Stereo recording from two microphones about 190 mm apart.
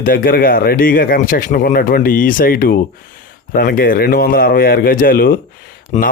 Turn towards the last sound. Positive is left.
turn(degrees=40)  # may be behind; listen again after turning